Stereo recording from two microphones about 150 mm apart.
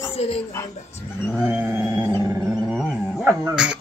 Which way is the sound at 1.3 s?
10° right (ahead or behind).